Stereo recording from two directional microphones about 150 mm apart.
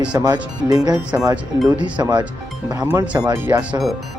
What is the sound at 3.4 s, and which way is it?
Speech, 10° right (ahead or behind).